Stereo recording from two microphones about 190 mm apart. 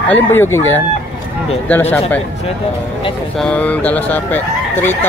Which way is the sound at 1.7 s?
10° left (ahead or behind).